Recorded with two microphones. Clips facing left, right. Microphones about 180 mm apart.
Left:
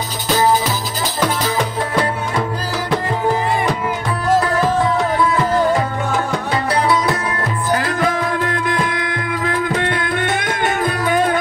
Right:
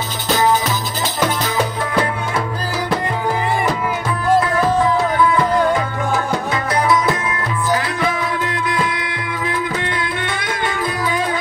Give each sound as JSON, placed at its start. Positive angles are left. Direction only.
{"t": 6.5, "sound": "music", "side_deg": 35}
{"t": 7.7, "sound": "music", "side_deg": 45}